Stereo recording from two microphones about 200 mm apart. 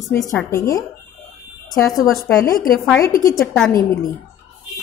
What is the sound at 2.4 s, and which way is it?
Speech, 45° left (ahead or behind).